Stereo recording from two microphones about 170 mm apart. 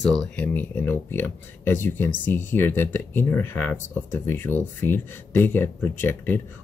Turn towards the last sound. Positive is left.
turn(degrees=10)  # may be behind; listen again after turning